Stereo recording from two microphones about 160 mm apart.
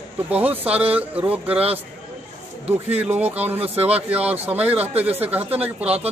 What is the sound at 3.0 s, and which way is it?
A man's voice, 10° right (ahead or behind).